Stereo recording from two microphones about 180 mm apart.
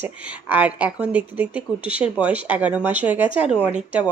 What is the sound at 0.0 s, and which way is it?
Speech, 10° right (ahead or behind).